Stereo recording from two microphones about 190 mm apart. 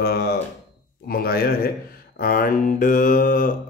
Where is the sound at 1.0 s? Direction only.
50° left (ahead or behind).